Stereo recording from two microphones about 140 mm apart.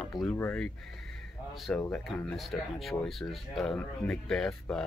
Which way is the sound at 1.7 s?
10° left (ahead or behind).